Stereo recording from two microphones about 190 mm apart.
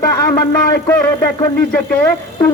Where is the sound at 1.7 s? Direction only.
10° left (ahead or behind).